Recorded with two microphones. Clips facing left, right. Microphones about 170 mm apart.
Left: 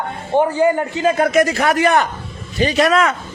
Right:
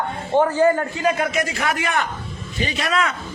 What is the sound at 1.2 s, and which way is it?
Speech, 40° left (ahead or behind).